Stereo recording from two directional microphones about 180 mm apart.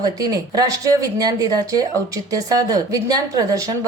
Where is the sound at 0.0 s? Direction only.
20° right (ahead or behind).